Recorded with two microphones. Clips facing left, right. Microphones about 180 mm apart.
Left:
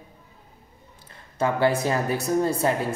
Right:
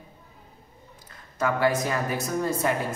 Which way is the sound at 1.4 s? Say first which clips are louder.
Left 2 dB; 30° left (ahead or behind).